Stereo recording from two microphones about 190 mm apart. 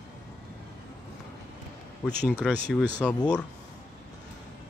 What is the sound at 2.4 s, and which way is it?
Speech, centre (ahead or behind).